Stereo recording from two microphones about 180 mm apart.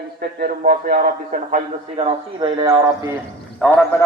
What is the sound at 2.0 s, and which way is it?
Speech, 25° right (ahead or behind).